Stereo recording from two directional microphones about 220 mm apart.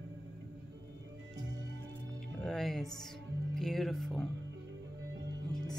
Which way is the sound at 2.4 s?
Centre (ahead or behind).